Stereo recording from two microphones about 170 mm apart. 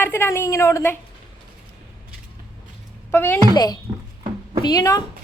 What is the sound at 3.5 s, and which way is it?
Speech, 25° left (ahead or behind).